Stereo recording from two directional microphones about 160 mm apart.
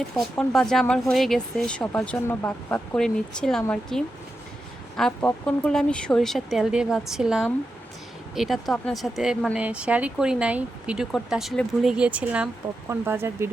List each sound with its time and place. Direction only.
0.2 s speech: 5° left (ahead or behind); by 13.5 s 15° right (ahead or behind)